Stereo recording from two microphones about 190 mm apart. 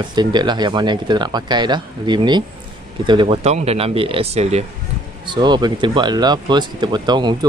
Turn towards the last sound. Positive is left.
turn(degrees=-25)  # may be behind; listen again after turning